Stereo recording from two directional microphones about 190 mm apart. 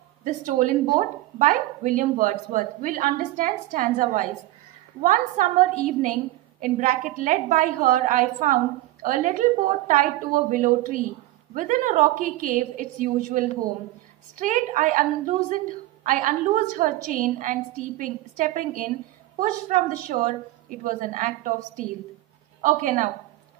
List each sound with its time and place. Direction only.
0.2 s a woman's voice: 40° right (ahead or behind)
19.7 s a woman's voice: 40° right (ahead or behind)